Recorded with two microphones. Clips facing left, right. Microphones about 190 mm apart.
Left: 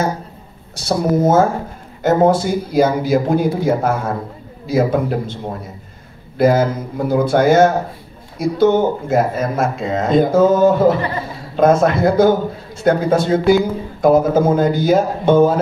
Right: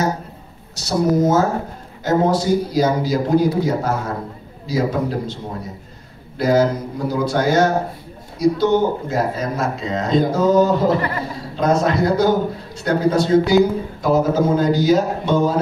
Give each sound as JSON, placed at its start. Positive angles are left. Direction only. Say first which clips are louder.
{"t": 0.7, "sound": "speech", "louder": "left 1 dB", "side_deg": 55}